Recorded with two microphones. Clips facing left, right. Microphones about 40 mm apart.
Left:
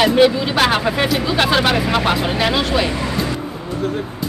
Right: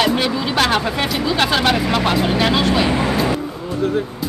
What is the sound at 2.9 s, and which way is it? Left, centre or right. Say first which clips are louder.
Speech: right 4 dB; right.